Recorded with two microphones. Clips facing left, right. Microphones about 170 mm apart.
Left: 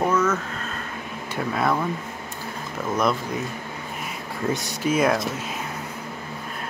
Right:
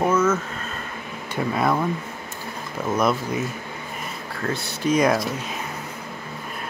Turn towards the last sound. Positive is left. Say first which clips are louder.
# right 1 dB
turn(degrees=5)  # may be behind; listen again after turning